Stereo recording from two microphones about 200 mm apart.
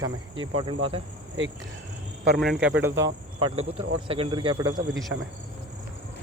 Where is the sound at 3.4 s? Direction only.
30° right (ahead or behind).